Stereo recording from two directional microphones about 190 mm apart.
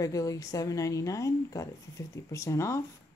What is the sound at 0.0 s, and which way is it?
Speech, 20° left (ahead or behind).